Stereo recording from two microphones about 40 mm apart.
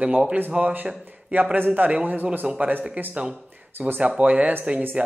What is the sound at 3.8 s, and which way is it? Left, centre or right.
Speech, right.